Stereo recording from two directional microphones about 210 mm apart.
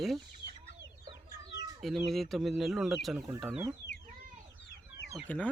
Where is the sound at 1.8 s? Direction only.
Centre (ahead or behind).